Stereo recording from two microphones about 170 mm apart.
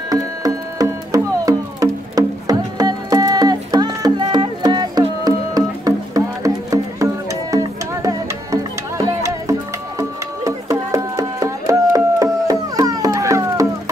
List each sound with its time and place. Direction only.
0.1 s music: 20° right (ahead or behind)